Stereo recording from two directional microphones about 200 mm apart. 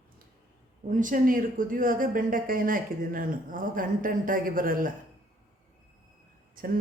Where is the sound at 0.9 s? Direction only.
40° right (ahead or behind).